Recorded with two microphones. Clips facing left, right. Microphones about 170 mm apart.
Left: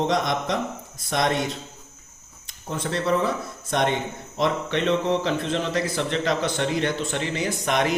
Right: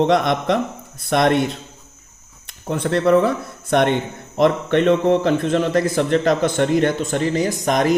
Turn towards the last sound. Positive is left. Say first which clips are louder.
# right 6 dB
turn(degrees=-40)  # may be behind; listen again after turning